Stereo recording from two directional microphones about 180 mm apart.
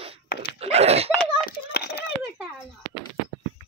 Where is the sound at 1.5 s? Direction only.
55° left (ahead or behind).